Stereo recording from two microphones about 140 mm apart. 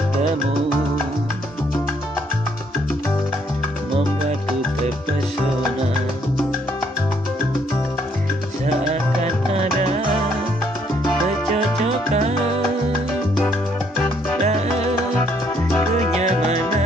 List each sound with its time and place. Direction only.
9.2 s music: 50° right (ahead or behind)
11.5 s music: 50° right (ahead or behind)
14.4 s salsa music: 50° right (ahead or behind)